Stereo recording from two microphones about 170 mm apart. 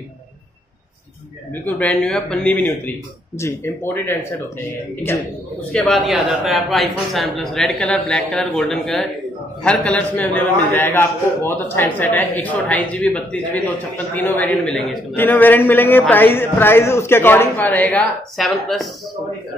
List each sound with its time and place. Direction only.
1.5 s a man's voice: 10° left (ahead or behind)
5.7 s a man's voice: centre (ahead or behind)